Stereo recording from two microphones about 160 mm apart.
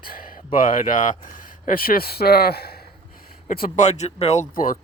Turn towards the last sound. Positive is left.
turn(degrees=60)  # may be behind; listen again after turning